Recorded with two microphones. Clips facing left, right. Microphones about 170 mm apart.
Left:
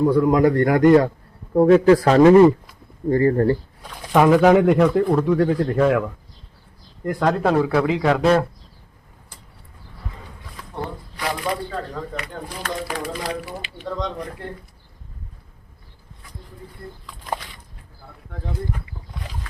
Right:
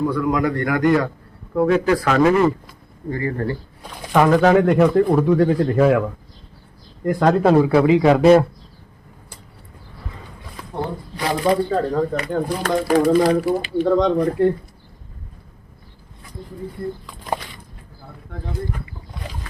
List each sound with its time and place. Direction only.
0.0 s speech: 30° left (ahead or behind)
4.1 s speech: 5° left (ahead or behind)
7.0 s speech: centre (ahead or behind)
11.2 s speech: 30° right (ahead or behind)
11.9 s speech: 50° right (ahead or behind)
13.8 s speech: 80° right